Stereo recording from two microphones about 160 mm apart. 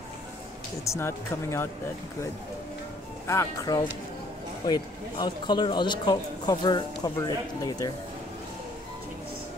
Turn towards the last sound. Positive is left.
turn(degrees=25)  # may be behind; listen again after turning